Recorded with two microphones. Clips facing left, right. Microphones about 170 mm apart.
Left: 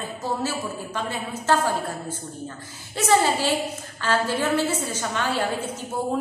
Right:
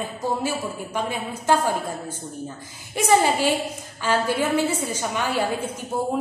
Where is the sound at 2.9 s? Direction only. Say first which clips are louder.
Right 1 dB; 15° right (ahead or behind).